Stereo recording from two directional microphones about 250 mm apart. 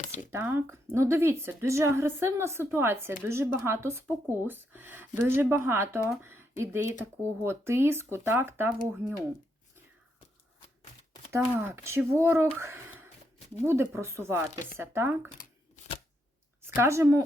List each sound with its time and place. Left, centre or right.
0.3 s speech: centre
11.3 s speech: centre
12.5 s a sound: centre
13.7 s speech: centre
15.4 s a sound: left
16.6 s speech: centre